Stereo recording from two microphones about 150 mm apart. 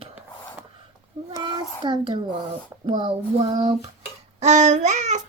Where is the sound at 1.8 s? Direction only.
30° right (ahead or behind).